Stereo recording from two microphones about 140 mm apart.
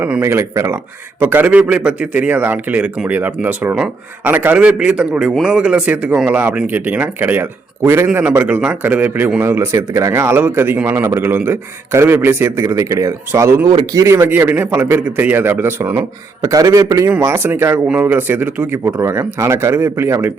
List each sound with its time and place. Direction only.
0.0 s a man's voice: 15° right (ahead or behind)